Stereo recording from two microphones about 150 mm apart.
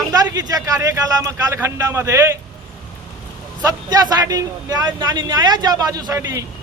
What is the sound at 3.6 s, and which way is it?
A man's voice, 25° right (ahead or behind).